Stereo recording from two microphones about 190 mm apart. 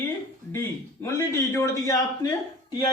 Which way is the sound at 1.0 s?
15° left (ahead or behind).